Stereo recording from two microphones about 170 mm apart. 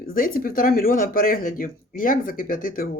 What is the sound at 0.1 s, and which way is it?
Speech, 55° left (ahead or behind).